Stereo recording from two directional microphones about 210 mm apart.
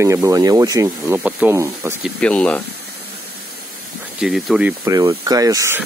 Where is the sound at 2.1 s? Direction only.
5° left (ahead or behind).